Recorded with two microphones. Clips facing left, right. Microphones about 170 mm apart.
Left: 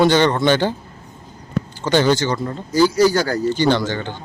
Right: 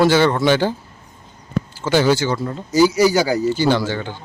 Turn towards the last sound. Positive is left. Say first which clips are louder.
# even
turn(degrees=-10)  # may be behind; listen again after turning